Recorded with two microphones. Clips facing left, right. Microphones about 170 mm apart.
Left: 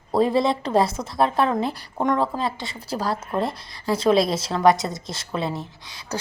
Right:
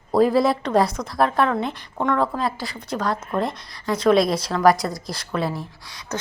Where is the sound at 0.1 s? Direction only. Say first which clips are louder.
Right 3 dB; centre (ahead or behind).